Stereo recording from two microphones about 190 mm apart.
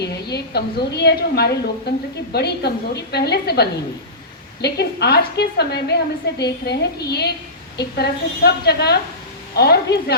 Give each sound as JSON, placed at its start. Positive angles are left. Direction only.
{"t": 0.0, "sound": "a woman's voice", "side_deg": 60}